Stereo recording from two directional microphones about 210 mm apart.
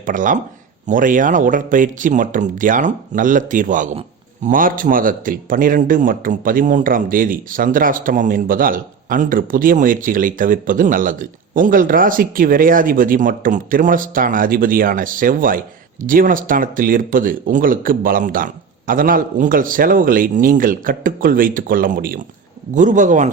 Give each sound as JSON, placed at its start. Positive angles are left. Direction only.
{"t": 0.0, "sound": "a man's voice", "side_deg": -40}